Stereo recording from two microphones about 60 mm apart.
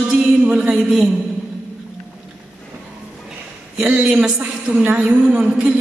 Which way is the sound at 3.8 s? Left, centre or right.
Centre.